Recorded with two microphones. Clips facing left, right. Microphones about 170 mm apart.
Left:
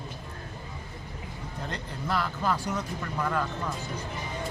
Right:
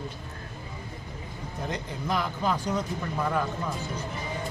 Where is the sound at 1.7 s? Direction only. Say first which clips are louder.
Right 2 dB; 15° right (ahead or behind).